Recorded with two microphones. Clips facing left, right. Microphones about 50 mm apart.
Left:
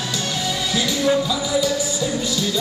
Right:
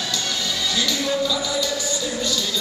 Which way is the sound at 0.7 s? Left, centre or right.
Centre.